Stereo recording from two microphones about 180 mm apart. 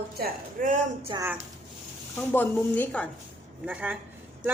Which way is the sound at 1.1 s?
25° right (ahead or behind).